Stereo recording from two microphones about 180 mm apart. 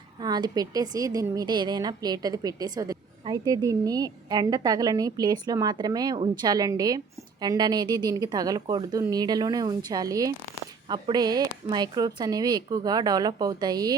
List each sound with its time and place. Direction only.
0.2 s a woman's voice: 20° right (ahead or behind)